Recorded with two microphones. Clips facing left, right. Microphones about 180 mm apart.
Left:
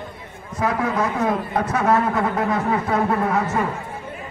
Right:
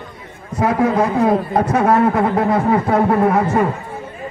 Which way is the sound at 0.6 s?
30° right (ahead or behind).